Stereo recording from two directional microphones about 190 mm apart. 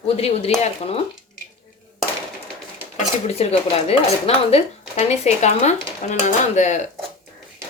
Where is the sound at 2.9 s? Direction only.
35° left (ahead or behind).